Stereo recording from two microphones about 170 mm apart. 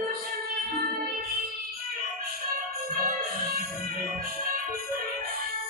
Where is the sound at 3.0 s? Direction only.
50° right (ahead or behind).